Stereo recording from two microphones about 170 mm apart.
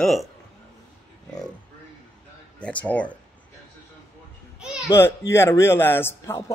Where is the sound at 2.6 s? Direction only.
5° left (ahead or behind).